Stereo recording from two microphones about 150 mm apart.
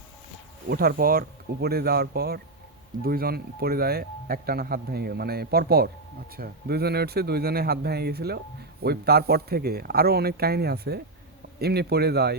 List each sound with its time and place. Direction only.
0.7 s speech: 85° right
1.6 s speech: 90° right